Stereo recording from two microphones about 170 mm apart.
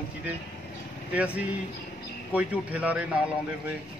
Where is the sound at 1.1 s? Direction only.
10° right (ahead or behind).